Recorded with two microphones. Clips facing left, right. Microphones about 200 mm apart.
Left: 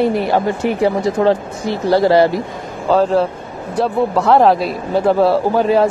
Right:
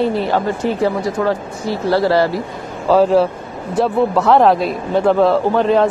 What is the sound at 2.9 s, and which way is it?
A man's voice, 5° right (ahead or behind).